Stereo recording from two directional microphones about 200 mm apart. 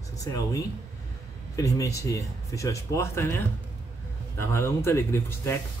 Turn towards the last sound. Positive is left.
turn(degrees=15)  # may be behind; listen again after turning